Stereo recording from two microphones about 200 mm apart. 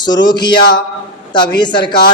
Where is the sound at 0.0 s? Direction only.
20° left (ahead or behind).